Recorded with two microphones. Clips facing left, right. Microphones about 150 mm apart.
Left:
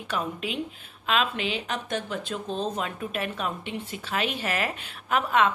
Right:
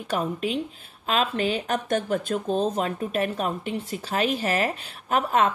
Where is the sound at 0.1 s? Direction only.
40° right (ahead or behind).